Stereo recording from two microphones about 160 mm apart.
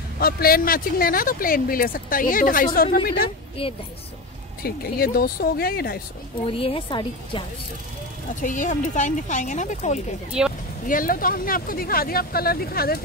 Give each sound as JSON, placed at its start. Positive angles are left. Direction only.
{"t": 0.2, "sound": "speech", "side_deg": 70}
{"t": 3.6, "sound": "speech", "side_deg": 35}
{"t": 4.6, "sound": "speech", "side_deg": 70}
{"t": 6.4, "sound": "speech", "side_deg": 35}
{"t": 8.4, "sound": "speech", "side_deg": 55}
{"t": 10.4, "sound": "speech", "side_deg": -5}
{"t": 10.9, "sound": "speech", "side_deg": 60}